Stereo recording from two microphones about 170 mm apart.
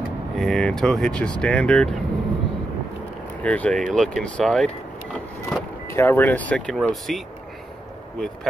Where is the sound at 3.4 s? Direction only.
5° left (ahead or behind).